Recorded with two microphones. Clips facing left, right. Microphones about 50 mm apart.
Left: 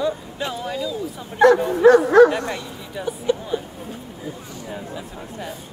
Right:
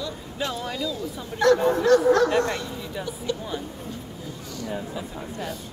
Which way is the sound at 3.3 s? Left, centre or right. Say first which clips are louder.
Left 8 dB; left.